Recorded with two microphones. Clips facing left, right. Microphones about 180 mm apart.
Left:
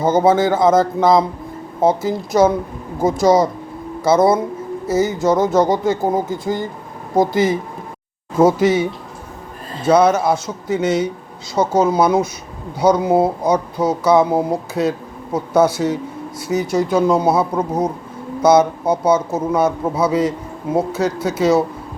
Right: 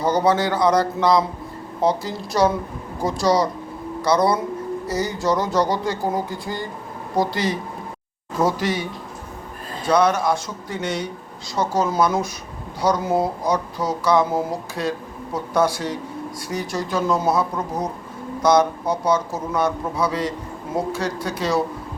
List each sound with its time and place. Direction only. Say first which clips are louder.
0.0 s speech: left 5 dB; 20° left (ahead or behind)
1.9 s speech: left 6 dB; 25° left (ahead or behind)